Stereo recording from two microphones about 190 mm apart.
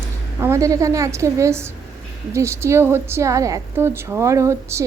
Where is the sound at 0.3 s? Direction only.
15° right (ahead or behind).